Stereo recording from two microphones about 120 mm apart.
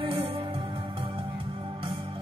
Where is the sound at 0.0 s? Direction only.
45° right (ahead or behind).